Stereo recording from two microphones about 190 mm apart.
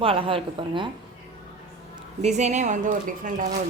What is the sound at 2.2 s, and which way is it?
A woman's voice, 35° right (ahead or behind).